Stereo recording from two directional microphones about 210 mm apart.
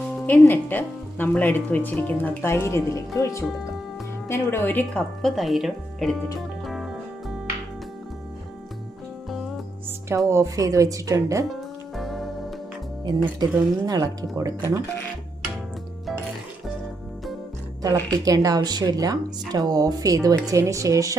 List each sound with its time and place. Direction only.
0.2 s speech: 10° left (ahead or behind)
6.7 s music: centre (ahead or behind)
9.8 s speech: 10° right (ahead or behind)
11.9 s music: centre (ahead or behind)
13.1 s speech: 20° right (ahead or behind)
17.8 s speech: 15° right (ahead or behind)